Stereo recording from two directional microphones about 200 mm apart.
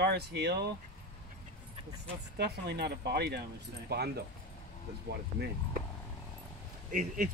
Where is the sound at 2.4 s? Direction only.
55° right (ahead or behind).